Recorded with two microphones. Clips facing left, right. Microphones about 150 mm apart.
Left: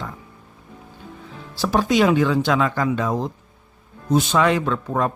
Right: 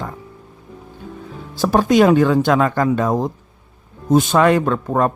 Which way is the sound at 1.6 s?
50° right (ahead or behind).